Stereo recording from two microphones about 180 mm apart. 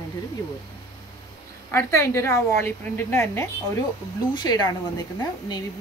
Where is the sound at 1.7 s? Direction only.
15° left (ahead or behind).